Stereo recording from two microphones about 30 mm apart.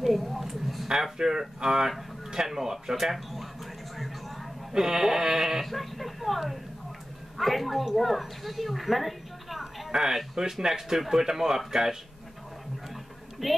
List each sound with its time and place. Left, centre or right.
0.0 s a woman's voice: centre
0.5 s a sound: centre
1.1 s speech: right
3.9 s a sound: centre
4.7 s a woman's voice: centre
13.4 s a woman's voice: centre